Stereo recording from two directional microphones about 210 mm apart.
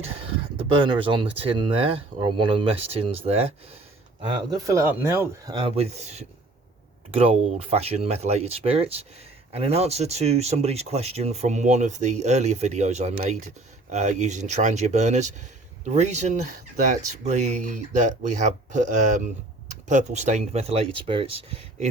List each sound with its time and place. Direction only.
0.5 s speech: 25° right (ahead or behind)
5.5 s speech: 25° right (ahead or behind)